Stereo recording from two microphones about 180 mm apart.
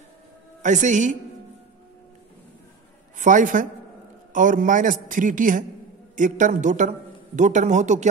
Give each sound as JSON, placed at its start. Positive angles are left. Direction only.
{"t": 0.6, "sound": "a man's voice", "side_deg": -45}
{"t": 3.2, "sound": "a man's voice", "side_deg": -45}